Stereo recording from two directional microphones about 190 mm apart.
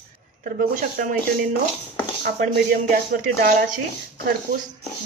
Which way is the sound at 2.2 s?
45° right (ahead or behind).